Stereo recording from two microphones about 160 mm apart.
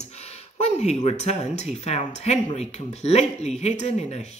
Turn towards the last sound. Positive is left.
turn(degrees=45)  # may be behind; listen again after turning